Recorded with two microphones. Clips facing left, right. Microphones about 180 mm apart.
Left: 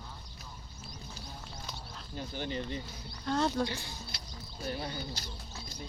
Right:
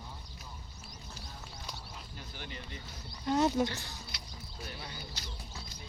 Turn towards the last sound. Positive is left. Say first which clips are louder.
# left 6 dB
turn(degrees=30)  # may be behind; listen again after turning